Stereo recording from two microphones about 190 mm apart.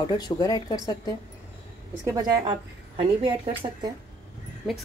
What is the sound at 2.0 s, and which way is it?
Speech, 20° right (ahead or behind).